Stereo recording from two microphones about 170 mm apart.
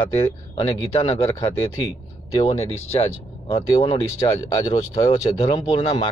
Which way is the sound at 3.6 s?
25° left (ahead or behind).